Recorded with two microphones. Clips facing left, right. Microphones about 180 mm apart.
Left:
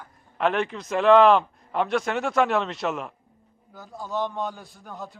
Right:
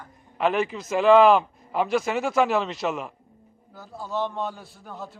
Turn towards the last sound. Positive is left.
turn(degrees=0)  # may be behind; listen again after turning